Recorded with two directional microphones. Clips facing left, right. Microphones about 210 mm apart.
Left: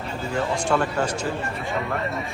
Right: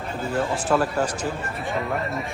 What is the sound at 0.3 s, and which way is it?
A man's voice, 5° right (ahead or behind).